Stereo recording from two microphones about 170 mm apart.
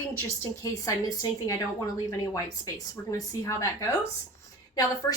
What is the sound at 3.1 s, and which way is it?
Speech, 20° left (ahead or behind).